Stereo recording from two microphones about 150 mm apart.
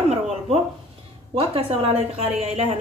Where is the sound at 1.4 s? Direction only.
40° right (ahead or behind).